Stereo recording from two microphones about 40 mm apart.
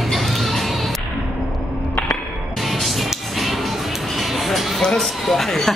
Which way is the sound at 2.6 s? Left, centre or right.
Centre.